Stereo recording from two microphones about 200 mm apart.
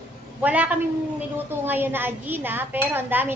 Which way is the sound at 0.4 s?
5° right (ahead or behind).